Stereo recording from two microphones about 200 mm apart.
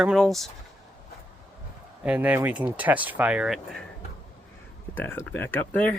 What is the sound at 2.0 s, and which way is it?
Speech, 10° right (ahead or behind).